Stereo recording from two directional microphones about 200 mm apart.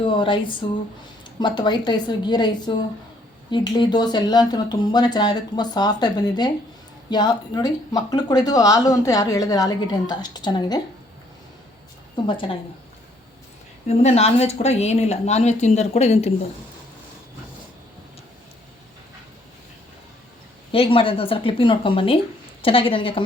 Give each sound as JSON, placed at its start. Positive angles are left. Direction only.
{"t": 0.0, "sound": "speech", "side_deg": 25}
{"t": 12.1, "sound": "speech", "side_deg": 25}
{"t": 13.8, "sound": "speech", "side_deg": 30}
{"t": 20.7, "sound": "speech", "side_deg": 25}